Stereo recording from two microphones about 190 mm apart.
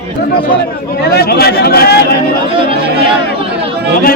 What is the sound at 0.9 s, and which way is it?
A man's voice, 55° left (ahead or behind).